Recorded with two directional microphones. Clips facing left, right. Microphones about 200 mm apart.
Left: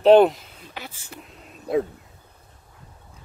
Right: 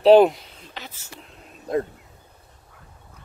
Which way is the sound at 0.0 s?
Centre (ahead or behind).